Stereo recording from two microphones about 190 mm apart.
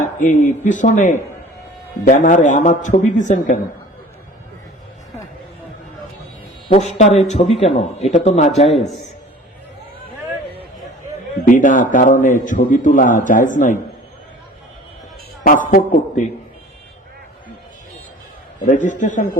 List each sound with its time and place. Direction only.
0.0 s a man's voice: 45° left (ahead or behind)
6.7 s a man's voice: 35° left (ahead or behind)
11.4 s a man's voice: 45° left (ahead or behind)
15.4 s a man's voice: 45° left (ahead or behind)
18.6 s a man's voice: 40° left (ahead or behind)